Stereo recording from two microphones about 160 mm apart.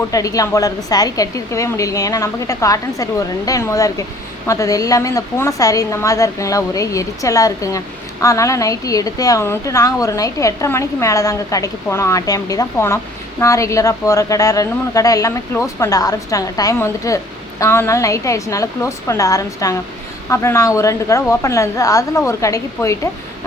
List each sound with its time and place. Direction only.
0.1 s a woman's voice: 20° left (ahead or behind)